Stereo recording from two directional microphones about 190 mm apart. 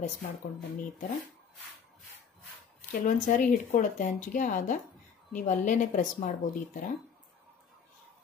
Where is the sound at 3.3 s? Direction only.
40° left (ahead or behind).